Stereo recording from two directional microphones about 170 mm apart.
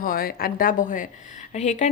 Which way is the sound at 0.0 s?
60° left (ahead or behind).